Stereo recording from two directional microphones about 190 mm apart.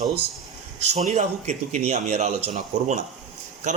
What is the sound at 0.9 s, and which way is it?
Speech, 35° right (ahead or behind).